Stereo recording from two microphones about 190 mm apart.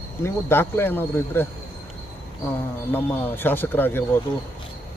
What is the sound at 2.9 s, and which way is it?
Speech, 10° left (ahead or behind).